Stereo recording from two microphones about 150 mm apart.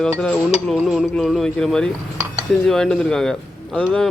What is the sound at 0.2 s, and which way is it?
Speech, 5° left (ahead or behind).